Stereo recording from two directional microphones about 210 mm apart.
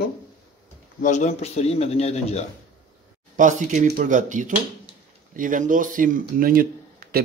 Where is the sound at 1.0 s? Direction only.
35° left (ahead or behind).